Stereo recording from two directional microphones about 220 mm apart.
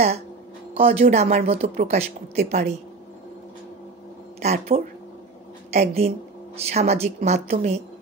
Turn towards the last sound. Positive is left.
turn(degrees=-30)  # may be behind; listen again after turning